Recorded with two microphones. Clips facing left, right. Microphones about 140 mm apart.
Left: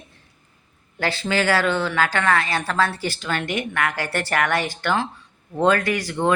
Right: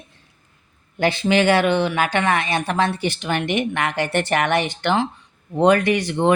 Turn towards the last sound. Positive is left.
turn(degrees=-20)  # may be behind; listen again after turning